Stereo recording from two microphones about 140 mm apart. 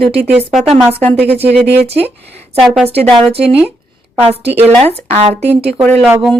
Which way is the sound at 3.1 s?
45° right (ahead or behind).